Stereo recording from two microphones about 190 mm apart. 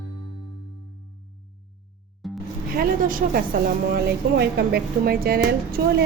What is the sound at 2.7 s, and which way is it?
Vehicle, 50° right (ahead or behind).